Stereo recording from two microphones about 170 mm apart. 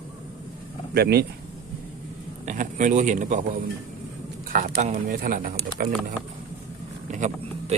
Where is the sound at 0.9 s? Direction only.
70° right (ahead or behind).